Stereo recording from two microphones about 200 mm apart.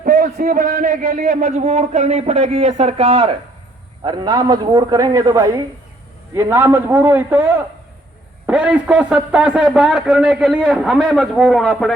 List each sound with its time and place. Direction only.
0.0 s a man's voice: 45° right (ahead or behind); by 11.9 s centre (ahead or behind)